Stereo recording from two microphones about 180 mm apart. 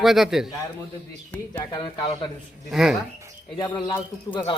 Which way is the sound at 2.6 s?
Centre (ahead or behind).